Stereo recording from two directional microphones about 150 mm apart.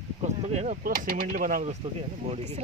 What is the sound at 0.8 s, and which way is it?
Speech, 70° right (ahead or behind).